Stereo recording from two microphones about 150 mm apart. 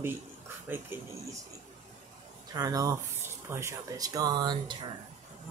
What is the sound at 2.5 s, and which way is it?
Speech, 25° right (ahead or behind).